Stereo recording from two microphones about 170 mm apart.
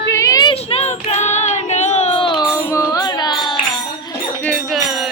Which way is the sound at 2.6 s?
15° left (ahead or behind).